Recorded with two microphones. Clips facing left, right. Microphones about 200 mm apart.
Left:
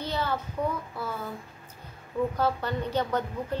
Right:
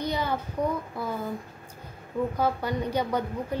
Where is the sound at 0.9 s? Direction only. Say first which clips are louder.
Right 3 dB; 15° right (ahead or behind).